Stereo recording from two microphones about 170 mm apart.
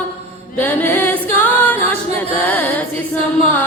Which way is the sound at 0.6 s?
10° left (ahead or behind).